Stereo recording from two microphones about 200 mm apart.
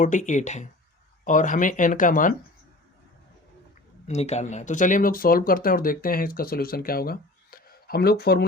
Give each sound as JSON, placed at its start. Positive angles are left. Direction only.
{"t": 0.0, "sound": "speech", "side_deg": 40}
{"t": 4.0, "sound": "speech", "side_deg": 35}